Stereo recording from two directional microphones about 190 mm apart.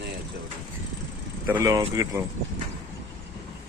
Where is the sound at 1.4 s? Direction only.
15° right (ahead or behind).